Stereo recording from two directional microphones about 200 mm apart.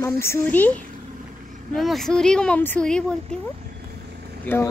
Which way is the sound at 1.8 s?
Centre (ahead or behind).